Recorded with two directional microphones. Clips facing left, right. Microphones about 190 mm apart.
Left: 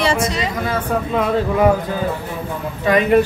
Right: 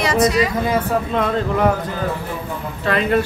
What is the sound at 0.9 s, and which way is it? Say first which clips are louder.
Speech: left 1 dB; 5° left (ahead or behind).